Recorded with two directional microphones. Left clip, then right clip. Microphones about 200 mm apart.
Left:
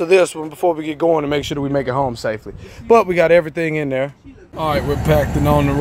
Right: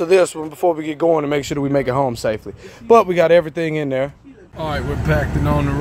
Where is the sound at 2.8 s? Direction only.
5° right (ahead or behind).